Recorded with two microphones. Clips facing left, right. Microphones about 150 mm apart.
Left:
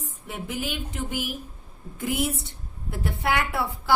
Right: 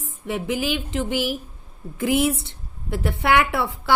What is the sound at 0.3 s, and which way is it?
A woman's voice, 90° right.